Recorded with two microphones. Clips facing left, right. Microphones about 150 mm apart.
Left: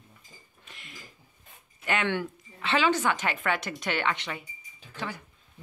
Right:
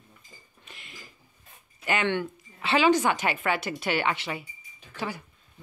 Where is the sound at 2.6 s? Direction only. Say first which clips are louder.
Right 3 dB; 10° right (ahead or behind).